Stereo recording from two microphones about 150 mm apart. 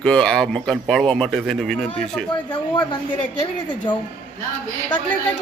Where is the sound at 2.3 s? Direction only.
30° left (ahead or behind).